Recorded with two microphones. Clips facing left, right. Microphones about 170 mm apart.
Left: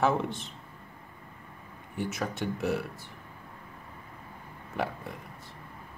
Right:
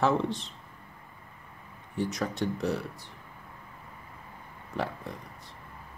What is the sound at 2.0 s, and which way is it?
Speech, 5° left (ahead or behind).